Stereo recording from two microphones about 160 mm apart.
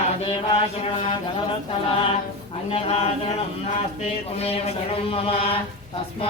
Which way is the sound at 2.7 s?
40° left (ahead or behind).